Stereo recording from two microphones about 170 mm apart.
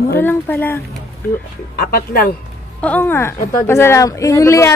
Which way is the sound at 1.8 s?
60° left (ahead or behind).